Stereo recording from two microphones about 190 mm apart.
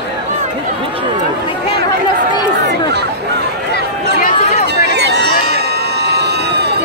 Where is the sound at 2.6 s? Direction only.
65° right (ahead or behind).